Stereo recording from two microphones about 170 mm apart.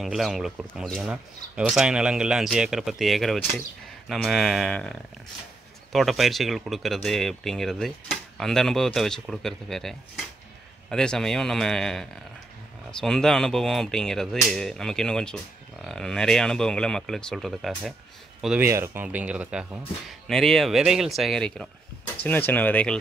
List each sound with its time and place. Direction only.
0.0 s speech: centre (ahead or behind)
18.7 s speech: 15° right (ahead or behind); by 22.9 s 10° left (ahead or behind)